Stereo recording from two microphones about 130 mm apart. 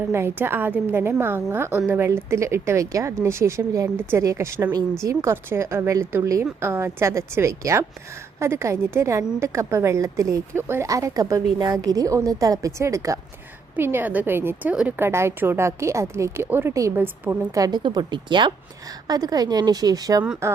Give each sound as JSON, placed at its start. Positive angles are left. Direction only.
{"t": 0.1, "sound": "a woman's voice", "side_deg": -20}
{"t": 17.5, "sound": "a woman's voice", "side_deg": -30}